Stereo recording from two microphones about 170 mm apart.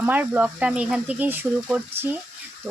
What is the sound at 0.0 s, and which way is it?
Speech, 10° right (ahead or behind).